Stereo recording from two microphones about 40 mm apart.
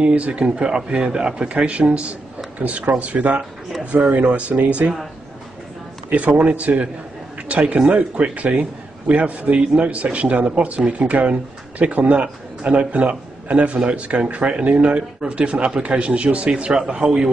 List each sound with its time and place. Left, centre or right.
0.0 s a man's voice: right
6.1 s a man's voice: right